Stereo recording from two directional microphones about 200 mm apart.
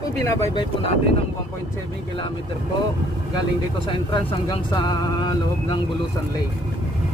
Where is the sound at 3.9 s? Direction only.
25° left (ahead or behind).